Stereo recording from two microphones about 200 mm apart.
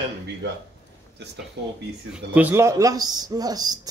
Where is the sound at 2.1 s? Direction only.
10° right (ahead or behind).